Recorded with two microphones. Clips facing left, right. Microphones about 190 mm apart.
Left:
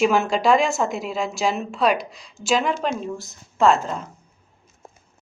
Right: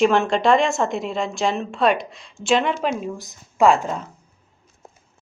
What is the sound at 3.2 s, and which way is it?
Speech, 15° right (ahead or behind).